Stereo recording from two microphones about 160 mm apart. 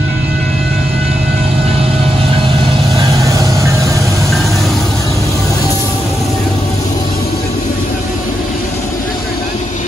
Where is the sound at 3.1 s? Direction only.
20° right (ahead or behind).